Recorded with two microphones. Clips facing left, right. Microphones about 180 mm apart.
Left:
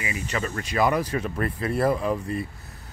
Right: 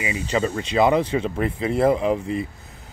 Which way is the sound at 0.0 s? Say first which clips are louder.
Right 6 dB; 25° right (ahead or behind).